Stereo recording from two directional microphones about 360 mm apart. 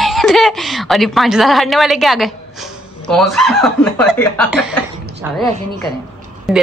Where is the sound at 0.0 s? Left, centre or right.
Centre.